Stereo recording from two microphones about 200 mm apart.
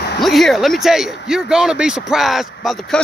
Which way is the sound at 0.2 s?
Centre (ahead or behind).